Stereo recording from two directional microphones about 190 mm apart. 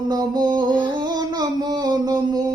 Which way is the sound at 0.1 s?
20° right (ahead or behind).